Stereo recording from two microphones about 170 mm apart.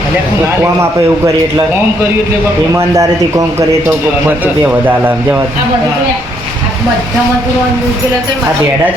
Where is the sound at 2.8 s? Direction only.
20° right (ahead or behind).